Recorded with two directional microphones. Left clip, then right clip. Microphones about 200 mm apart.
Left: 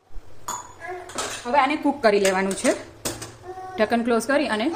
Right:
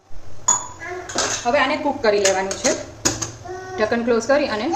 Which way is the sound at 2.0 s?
60° left (ahead or behind).